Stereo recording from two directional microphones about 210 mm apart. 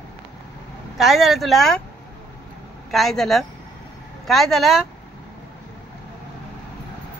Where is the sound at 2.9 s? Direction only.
Centre (ahead or behind).